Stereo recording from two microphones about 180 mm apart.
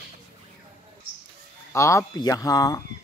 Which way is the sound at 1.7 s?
15° left (ahead or behind).